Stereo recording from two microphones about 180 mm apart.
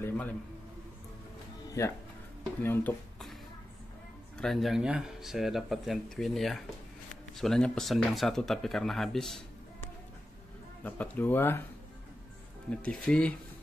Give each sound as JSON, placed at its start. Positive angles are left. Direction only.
{"t": 0.0, "sound": "a sound", "side_deg": 10}
{"t": 1.8, "sound": "speech", "side_deg": 15}
{"t": 4.4, "sound": "speech", "side_deg": 0}
{"t": 10.8, "sound": "speech", "side_deg": 10}
{"t": 12.6, "sound": "speech", "side_deg": 5}